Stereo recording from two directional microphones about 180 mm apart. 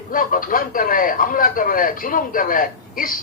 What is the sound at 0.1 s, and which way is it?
Speech, 50° left (ahead or behind).